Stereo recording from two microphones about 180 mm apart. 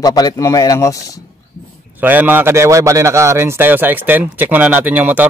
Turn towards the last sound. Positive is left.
turn(degrees=-10)  # may be behind; listen again after turning